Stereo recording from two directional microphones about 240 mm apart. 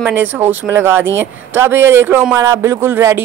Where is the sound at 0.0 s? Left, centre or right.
Centre.